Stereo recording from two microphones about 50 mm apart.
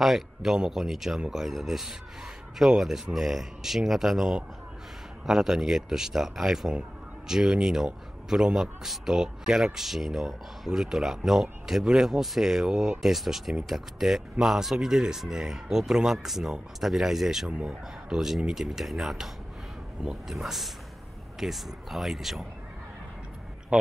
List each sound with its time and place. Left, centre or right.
0.0 s speech: centre
12.7 s speech: centre
13.0 s speech: centre
17.5 s speech: centre
23.7 s a man's voice: right